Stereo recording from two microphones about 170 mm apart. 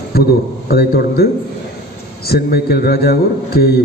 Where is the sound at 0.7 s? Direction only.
65° left (ahead or behind).